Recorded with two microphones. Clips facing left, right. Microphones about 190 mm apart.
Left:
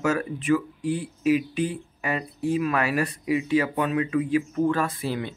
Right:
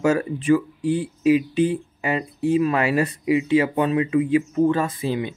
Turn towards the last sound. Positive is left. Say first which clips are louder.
# right 3 dB
turn(degrees=-20)  # may be behind; listen again after turning